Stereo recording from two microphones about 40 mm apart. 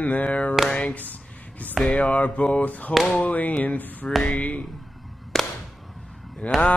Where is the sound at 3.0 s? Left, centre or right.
Left.